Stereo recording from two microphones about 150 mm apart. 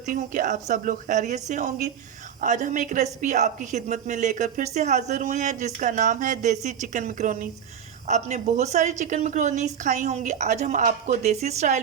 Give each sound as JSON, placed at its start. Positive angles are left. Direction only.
{"t": 0.1, "sound": "a woman's voice", "side_deg": -60}